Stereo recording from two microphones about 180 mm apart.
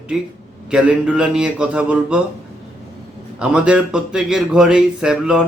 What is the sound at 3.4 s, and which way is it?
Speech, 5° right (ahead or behind).